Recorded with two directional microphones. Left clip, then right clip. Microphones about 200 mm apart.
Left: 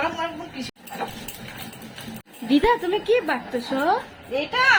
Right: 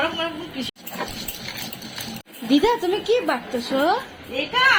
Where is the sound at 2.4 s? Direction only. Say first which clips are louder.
Right 1 dB; 5° left (ahead or behind).